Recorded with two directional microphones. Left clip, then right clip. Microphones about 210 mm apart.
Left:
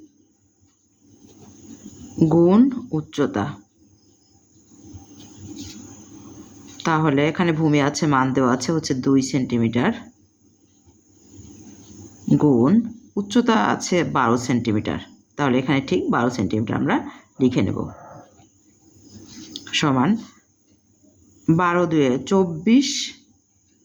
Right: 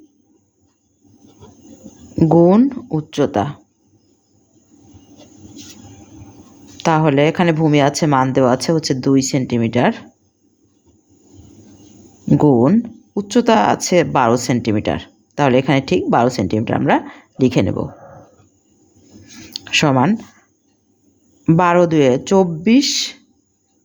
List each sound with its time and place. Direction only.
2.1 s speech: 25° right (ahead or behind)
6.8 s speech: 30° right (ahead or behind)
12.3 s speech: 30° right (ahead or behind)
19.5 s speech: 30° right (ahead or behind)
21.4 s speech: 35° right (ahead or behind)